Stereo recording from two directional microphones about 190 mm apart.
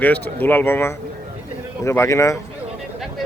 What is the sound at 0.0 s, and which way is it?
Speech, 10° left (ahead or behind).